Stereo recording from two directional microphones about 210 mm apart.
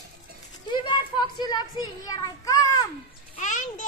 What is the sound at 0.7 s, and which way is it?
Speech, 20° left (ahead or behind).